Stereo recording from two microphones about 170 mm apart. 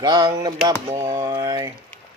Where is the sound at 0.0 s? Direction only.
25° right (ahead or behind).